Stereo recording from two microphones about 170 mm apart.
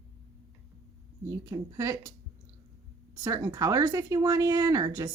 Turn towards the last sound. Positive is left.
turn(degrees=-20)  # may be behind; listen again after turning